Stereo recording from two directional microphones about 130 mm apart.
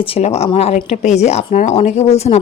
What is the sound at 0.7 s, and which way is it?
Speech, 75° left (ahead or behind).